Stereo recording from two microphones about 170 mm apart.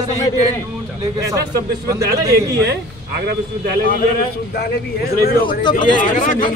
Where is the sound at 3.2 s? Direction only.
70° right (ahead or behind).